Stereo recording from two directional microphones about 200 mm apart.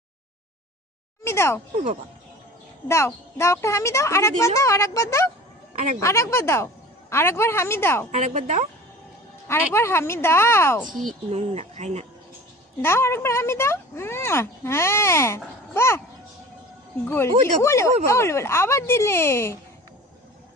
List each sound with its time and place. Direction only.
1.2 s speech: 15° left (ahead or behind)
2.9 s speech: 15° left (ahead or behind)
8.1 s speech: 40° right (ahead or behind)
9.8 s speech: 10° left (ahead or behind)
10.9 s a child's voice: centre (ahead or behind)
11.3 s speech: 35° right (ahead or behind)
12.8 s speech: 10° left (ahead or behind)
17.1 s speech: 15° left (ahead or behind)